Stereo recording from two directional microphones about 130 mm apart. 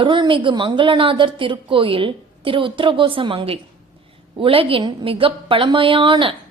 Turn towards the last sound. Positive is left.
turn(degrees=-40)  # may be behind; listen again after turning